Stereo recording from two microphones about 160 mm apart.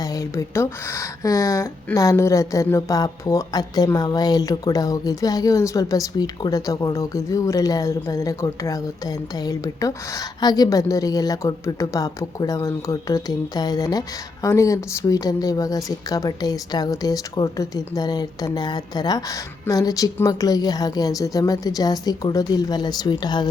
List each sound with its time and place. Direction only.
0.0 s speech: 20° left (ahead or behind)